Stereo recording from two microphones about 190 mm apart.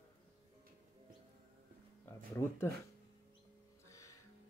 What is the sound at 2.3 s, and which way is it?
Speech, 10° left (ahead or behind).